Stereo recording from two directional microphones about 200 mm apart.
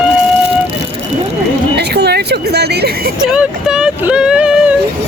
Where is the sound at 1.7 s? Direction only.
55° right (ahead or behind).